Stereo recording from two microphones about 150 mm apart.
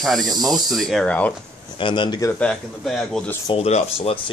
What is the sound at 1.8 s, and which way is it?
Speech, 35° left (ahead or behind).